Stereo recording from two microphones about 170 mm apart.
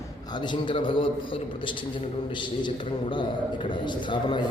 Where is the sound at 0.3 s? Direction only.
25° left (ahead or behind).